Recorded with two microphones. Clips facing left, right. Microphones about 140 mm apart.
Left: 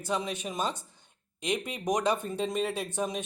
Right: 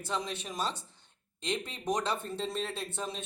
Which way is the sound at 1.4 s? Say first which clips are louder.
Left 4 dB; 15° left (ahead or behind).